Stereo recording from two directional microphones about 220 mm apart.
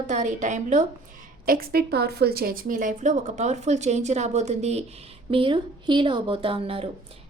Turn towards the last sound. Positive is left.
turn(degrees=-25)  # may be behind; listen again after turning